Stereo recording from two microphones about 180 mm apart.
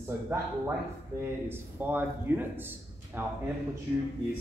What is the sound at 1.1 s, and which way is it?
Speech, 15° right (ahead or behind).